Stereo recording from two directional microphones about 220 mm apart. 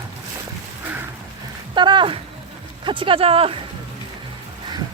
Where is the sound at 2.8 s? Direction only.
20° right (ahead or behind).